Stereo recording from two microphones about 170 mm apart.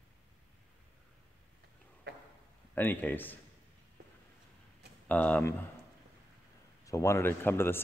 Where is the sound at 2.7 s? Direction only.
10° left (ahead or behind).